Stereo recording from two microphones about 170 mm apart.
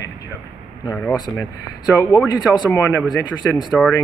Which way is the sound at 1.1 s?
25° left (ahead or behind).